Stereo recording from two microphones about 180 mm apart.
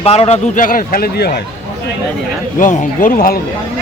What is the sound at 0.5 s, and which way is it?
Speech, 50° left (ahead or behind).